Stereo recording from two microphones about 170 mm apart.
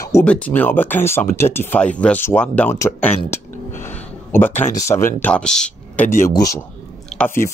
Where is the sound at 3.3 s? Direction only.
15° left (ahead or behind).